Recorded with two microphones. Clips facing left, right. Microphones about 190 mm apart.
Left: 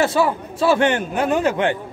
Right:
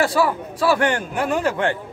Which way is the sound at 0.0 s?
25° left (ahead or behind).